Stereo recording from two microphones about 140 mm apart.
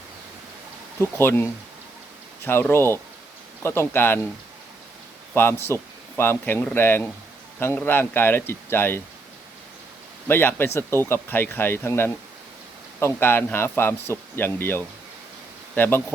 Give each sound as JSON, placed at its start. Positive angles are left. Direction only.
{"t": 1.2, "sound": "speech", "side_deg": 15}
{"t": 5.3, "sound": "speech", "side_deg": 15}
{"t": 10.2, "sound": "speech", "side_deg": 15}
{"t": 13.1, "sound": "speech", "side_deg": 15}